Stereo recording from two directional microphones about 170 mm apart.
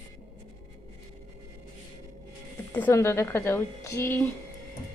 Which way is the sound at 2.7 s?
10° left (ahead or behind).